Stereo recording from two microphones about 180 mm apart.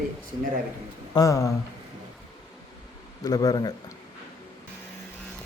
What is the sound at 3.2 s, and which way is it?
Speech, 20° left (ahead or behind).